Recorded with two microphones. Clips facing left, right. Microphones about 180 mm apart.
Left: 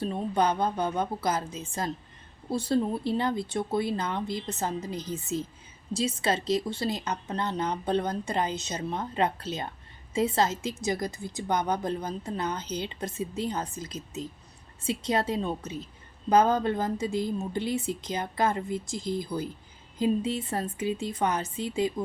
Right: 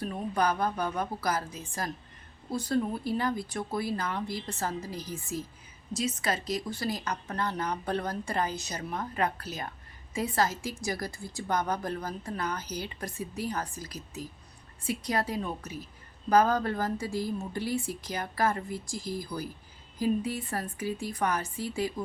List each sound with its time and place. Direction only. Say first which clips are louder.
0.0 s a woman's voice: left 3 dB; 25° left (ahead or behind)